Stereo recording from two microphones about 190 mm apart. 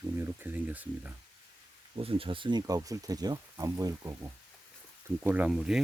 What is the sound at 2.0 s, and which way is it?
Speech, 30° right (ahead or behind).